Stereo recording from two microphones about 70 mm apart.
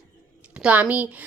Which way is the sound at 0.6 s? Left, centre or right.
Centre.